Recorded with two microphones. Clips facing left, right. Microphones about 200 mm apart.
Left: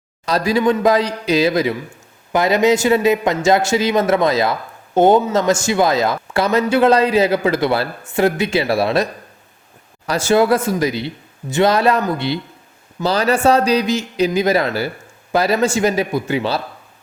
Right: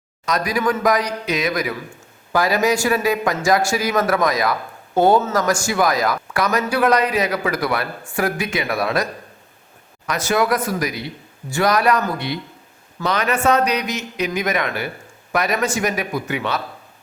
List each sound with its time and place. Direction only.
0.3 s speech: 30° left (ahead or behind)
10.1 s speech: 30° left (ahead or behind)